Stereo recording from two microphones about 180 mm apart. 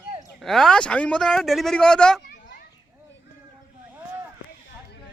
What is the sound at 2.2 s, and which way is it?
Children playing, 65° left (ahead or behind).